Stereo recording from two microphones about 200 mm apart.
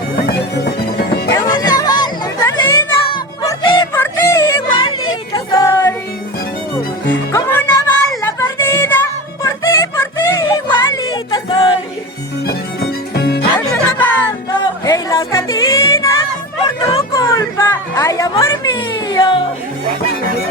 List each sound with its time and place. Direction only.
1.3 s music: 20° left (ahead or behind)
5.3 s a sound: 20° left (ahead or behind)
7.3 s music: 15° left (ahead or behind)
13.1 s music: 55° left (ahead or behind)
13.6 s music: 10° left (ahead or behind)
16.6 s a sound: 20° left (ahead or behind)